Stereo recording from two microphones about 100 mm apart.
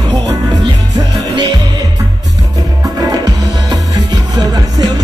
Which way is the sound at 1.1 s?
45° right (ahead or behind).